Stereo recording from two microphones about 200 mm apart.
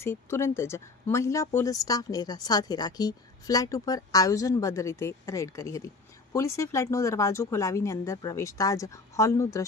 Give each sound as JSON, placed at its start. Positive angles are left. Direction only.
{"t": 0.0, "sound": "speech", "side_deg": 10}